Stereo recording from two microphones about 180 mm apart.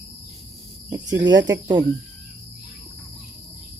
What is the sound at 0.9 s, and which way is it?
Speech, 20° right (ahead or behind).